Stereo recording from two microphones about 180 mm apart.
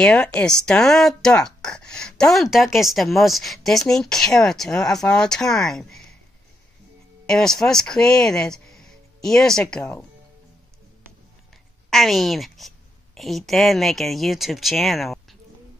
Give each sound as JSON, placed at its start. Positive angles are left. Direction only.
{"t": 0.0, "sound": "speech", "side_deg": 5}
{"t": 7.2, "sound": "speech", "side_deg": 5}
{"t": 11.9, "sound": "a woman's voice", "side_deg": 0}